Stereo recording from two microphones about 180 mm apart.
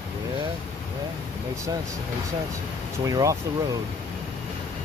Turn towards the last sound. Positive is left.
turn(degrees=-20)  # may be behind; listen again after turning